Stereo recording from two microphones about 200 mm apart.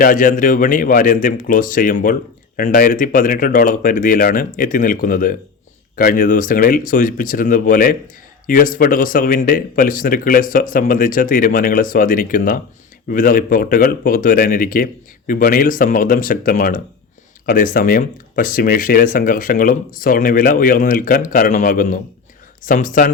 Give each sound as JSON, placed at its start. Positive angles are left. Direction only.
{"t": 0.0, "sound": "speech", "side_deg": 40}